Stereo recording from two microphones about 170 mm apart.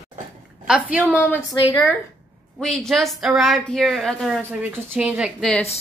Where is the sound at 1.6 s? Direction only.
20° left (ahead or behind).